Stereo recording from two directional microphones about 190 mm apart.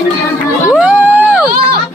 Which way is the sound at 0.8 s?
5° right (ahead or behind).